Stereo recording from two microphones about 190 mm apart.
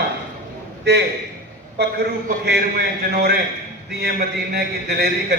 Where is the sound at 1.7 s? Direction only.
55° right (ahead or behind).